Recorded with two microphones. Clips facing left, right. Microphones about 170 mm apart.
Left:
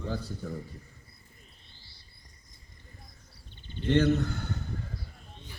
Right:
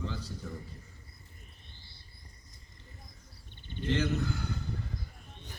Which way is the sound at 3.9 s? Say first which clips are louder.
Left 6 dB; 55° left (ahead or behind).